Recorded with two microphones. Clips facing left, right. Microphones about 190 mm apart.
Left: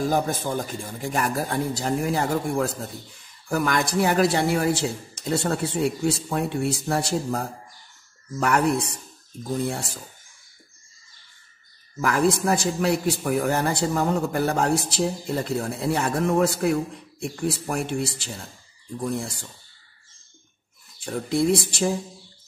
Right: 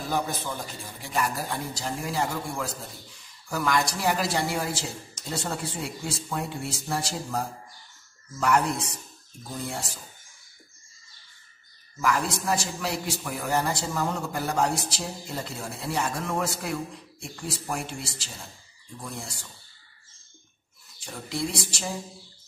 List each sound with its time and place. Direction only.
0.0 s a man's voice: 45° left (ahead or behind); by 7.2 s 60° left (ahead or behind)
8.4 s a man's voice: 60° left (ahead or behind)
12.0 s a man's voice: 55° left (ahead or behind)
21.0 s a man's voice: 55° left (ahead or behind)